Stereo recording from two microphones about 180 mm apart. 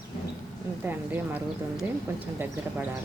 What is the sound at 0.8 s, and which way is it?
Speech, 10° right (ahead or behind).